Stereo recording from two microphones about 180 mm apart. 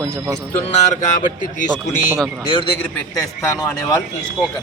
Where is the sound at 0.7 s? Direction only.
40° left (ahead or behind).